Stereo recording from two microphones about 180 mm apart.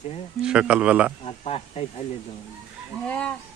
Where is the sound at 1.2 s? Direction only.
30° left (ahead or behind).